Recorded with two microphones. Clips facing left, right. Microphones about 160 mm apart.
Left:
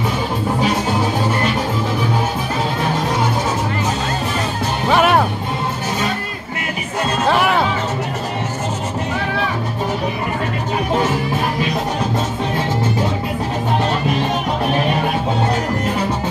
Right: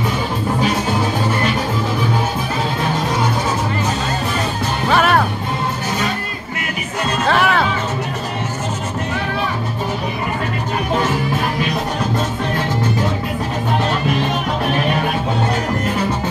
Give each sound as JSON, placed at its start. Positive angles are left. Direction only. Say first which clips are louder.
{"t": 4.8, "sound": "music", "louder": "left 1 dB", "side_deg": 20}
{"t": 7.2, "sound": "music", "louder": "even", "side_deg": 10}